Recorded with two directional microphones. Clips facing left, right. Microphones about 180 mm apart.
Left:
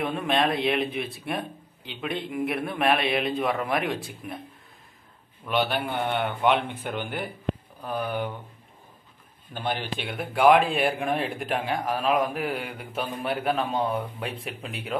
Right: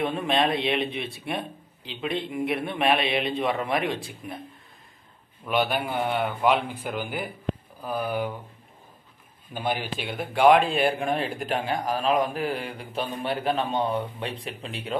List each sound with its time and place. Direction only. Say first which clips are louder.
0.3 s speech: left 1 dB; centre (ahead or behind)
5.4 s speech: right 1 dB; 5° right (ahead or behind)
9.5 s speech: right 1 dB; 10° right (ahead or behind); by 15.0 s 5° left (ahead or behind)